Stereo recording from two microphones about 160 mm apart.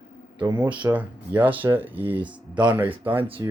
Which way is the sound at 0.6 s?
10° right (ahead or behind).